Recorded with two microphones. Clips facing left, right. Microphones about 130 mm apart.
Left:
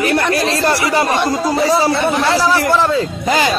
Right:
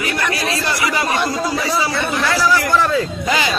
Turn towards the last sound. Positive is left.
turn(degrees=30)  # may be behind; listen again after turning